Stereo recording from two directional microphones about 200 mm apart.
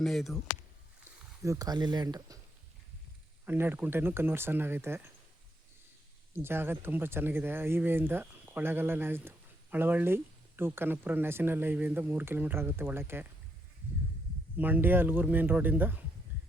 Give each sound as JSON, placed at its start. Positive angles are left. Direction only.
{"t": 0.0, "sound": "speech", "side_deg": 0}
{"t": 1.4, "sound": "speech", "side_deg": -15}
{"t": 3.4, "sound": "speech", "side_deg": -10}
{"t": 6.3, "sound": "speech", "side_deg": -10}
{"t": 14.6, "sound": "speech", "side_deg": -10}